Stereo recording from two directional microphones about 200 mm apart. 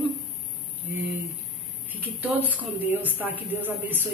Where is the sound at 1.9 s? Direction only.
10° right (ahead or behind).